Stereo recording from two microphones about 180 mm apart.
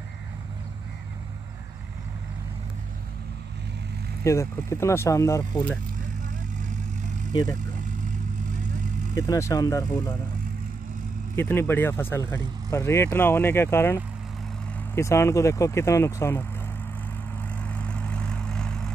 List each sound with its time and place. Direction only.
4.2 s speech: 15° left (ahead or behind)
9.1 s speech: 20° left (ahead or behind)
11.3 s speech: 10° left (ahead or behind)
17.7 s vehicle: 5° left (ahead or behind)